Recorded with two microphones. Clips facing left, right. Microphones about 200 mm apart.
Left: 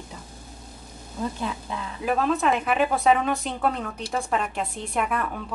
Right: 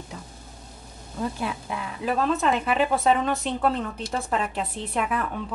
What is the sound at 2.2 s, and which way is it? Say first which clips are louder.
A woman's voice: even; centre (ahead or behind).